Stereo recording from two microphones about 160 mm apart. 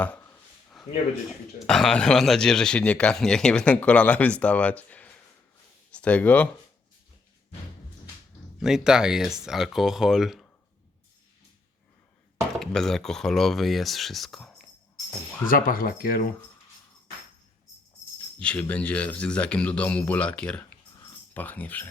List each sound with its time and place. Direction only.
0.0 s speech: 10° left (ahead or behind)
0.8 s a sound: centre (ahead or behind)
1.5 s speech: 5° left (ahead or behind)
8.5 s speech: 5° right (ahead or behind)
12.5 s speech: 5° left (ahead or behind)
15.4 s speech: 65° left (ahead or behind)
18.3 s speech: 10° left (ahead or behind)